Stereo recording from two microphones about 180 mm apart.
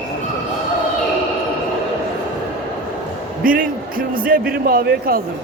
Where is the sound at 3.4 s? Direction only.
50° right (ahead or behind).